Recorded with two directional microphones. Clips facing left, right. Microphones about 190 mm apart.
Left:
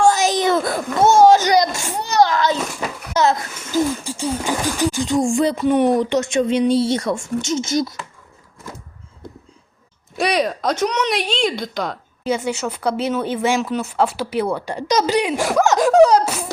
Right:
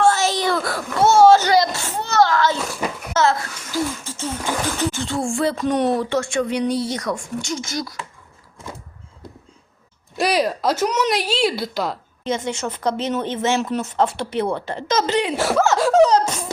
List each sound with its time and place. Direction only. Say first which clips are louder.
0.0 s a sound: left 2 dB; 15° left (ahead or behind)
3.2 s speech: left 1 dB; 15° left (ahead or behind)
10.2 s speech: even; centre (ahead or behind)
12.2 s speech: left 3 dB; 10° left (ahead or behind)